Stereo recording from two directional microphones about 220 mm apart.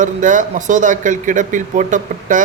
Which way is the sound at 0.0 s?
35° right (ahead or behind).